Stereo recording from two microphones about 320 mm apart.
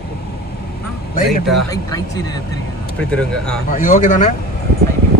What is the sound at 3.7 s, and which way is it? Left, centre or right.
Speech, left.